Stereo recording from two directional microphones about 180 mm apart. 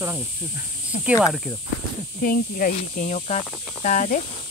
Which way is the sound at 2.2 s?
50° left (ahead or behind).